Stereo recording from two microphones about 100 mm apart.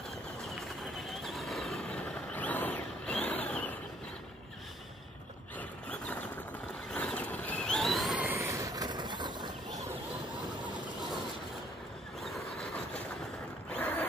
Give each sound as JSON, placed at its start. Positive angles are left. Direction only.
{"t": 1.2, "sound": "a sound", "side_deg": 0}
{"t": 1.9, "sound": "vehicle", "side_deg": 10}
{"t": 5.6, "sound": "a sound", "side_deg": 15}
{"t": 6.9, "sound": "vehicle", "side_deg": 10}
{"t": 8.4, "sound": "vehicle", "side_deg": -30}
{"t": 12.2, "sound": "vehicle", "side_deg": 0}
{"t": 13.7, "sound": "zipper", "side_deg": 15}